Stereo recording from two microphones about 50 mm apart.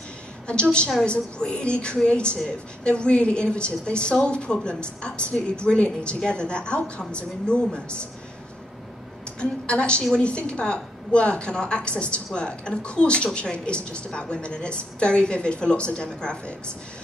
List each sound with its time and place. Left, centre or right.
0.5 s a woman's voice: centre
9.4 s a woman's voice: centre